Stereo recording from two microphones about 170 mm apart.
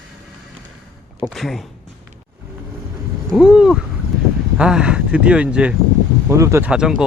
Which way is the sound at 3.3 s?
5° right (ahead or behind).